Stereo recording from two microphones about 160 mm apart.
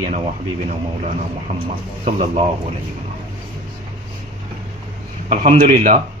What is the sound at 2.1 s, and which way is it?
Speech, 45° right (ahead or behind).